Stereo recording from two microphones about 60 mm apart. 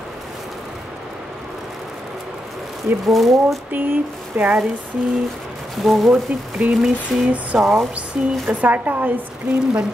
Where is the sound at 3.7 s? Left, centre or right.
Right.